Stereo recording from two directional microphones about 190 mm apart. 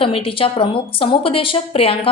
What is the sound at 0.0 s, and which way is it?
A woman's voice, 30° left (ahead or behind).